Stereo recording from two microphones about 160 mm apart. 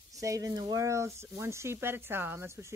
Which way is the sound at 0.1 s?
20° right (ahead or behind).